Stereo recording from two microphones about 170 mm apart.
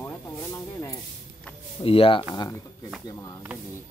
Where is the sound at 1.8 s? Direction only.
30° left (ahead or behind).